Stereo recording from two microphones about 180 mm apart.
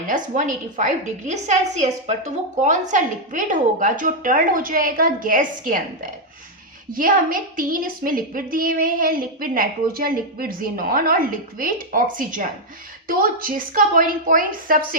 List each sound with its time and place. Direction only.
0.1 s a woman's voice: 45° right (ahead or behind)